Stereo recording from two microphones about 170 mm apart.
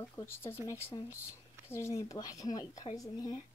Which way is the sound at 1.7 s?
15° left (ahead or behind).